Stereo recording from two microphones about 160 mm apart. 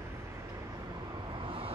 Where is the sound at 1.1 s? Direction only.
30° right (ahead or behind).